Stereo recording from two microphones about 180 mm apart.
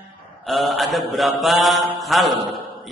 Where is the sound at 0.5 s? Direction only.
Centre (ahead or behind).